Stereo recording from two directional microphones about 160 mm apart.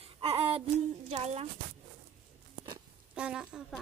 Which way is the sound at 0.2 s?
35° right (ahead or behind).